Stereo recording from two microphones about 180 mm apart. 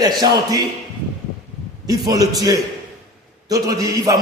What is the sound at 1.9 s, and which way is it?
A man's voice, 20° right (ahead or behind).